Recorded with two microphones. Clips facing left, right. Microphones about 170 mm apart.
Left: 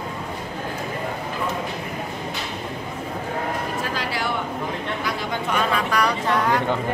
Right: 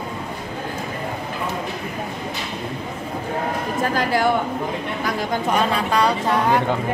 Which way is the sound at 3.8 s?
50° right (ahead or behind).